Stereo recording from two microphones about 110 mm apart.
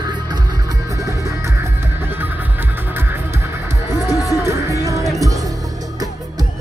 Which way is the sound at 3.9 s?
35° left (ahead or behind).